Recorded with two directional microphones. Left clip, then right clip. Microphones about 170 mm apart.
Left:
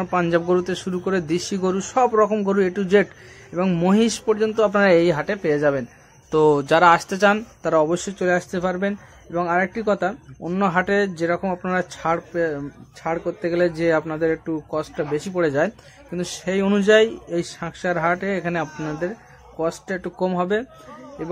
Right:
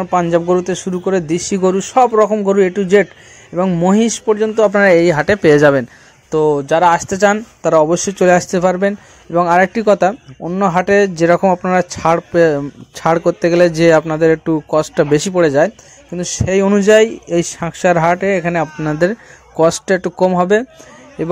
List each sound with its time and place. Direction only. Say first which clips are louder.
0.0 s a man's voice: right 7 dB; 15° right (ahead or behind)
5.1 s speech: right 11 dB; 40° right (ahead or behind)
6.3 s speech: right 3 dB; 5° right (ahead or behind)
7.0 s a man's voice: right 5 dB; 20° right (ahead or behind)
8.2 s speech: right 11 dB; 40° right (ahead or behind)
10.5 s a man's voice: right 7 dB; 25° right (ahead or behind)
18.9 s speech: right 12 dB; 50° right (ahead or behind)